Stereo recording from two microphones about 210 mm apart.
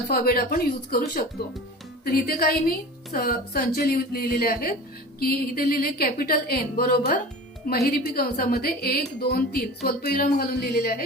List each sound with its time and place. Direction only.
0.1 s a woman's voice: 45° left (ahead or behind)